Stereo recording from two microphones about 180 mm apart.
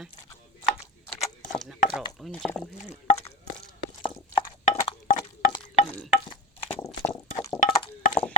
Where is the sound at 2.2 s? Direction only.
5° left (ahead or behind).